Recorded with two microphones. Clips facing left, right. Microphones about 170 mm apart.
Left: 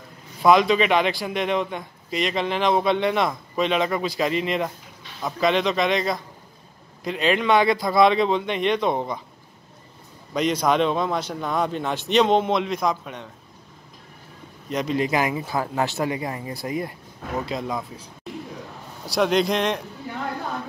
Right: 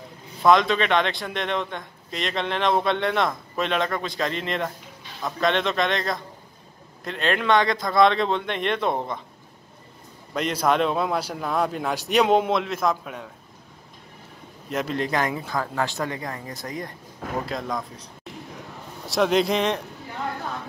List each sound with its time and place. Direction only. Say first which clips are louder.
0.4 s a man's voice: left 2 dB; 5° left (ahead or behind)
10.3 s a man's voice: left 2 dB; 5° right (ahead or behind)
14.7 s speech: left 2 dB; centre (ahead or behind); by 16.5 s 20° left (ahead or behind)
17.5 s a man's voice: left 1 dB; 5° left (ahead or behind)
19.0 s a man's voice: even; centre (ahead or behind)